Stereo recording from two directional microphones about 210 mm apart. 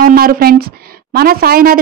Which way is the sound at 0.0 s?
45° right (ahead or behind).